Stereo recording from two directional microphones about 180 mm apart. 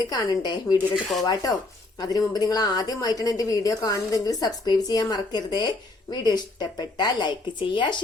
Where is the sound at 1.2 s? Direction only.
20° left (ahead or behind).